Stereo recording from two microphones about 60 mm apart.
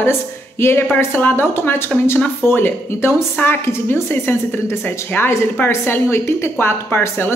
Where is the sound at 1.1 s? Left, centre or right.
Left.